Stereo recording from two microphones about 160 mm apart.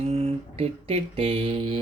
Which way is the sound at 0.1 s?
40° right (ahead or behind).